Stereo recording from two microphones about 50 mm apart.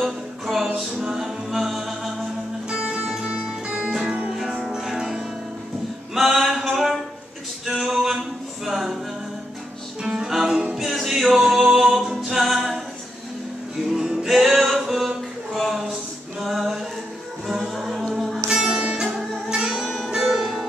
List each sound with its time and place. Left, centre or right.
0.0 s music: centre
3.3 s music: right
6.1 s a sound: centre
8.6 s a capella: centre
10.0 s music: centre
13.9 s music: centre
16.3 s a capella: centre
17.5 s music: centre
18.8 s music: centre